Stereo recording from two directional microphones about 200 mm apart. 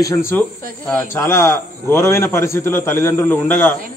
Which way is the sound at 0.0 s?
15° left (ahead or behind).